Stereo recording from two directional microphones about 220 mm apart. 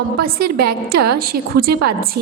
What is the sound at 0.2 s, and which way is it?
A woman's voice, 45° right (ahead or behind).